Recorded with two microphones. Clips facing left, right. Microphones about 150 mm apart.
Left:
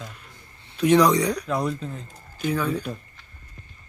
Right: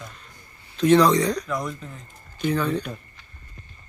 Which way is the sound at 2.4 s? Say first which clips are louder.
Right 1 dB; 5° left (ahead or behind).